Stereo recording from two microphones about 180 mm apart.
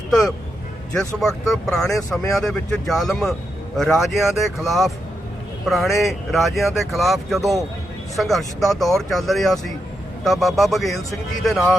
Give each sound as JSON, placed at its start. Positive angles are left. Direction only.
{"t": 0.1, "sound": "a man's voice", "side_deg": 0}